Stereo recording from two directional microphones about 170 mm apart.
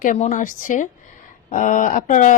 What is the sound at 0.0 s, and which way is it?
Speech, 50° left (ahead or behind).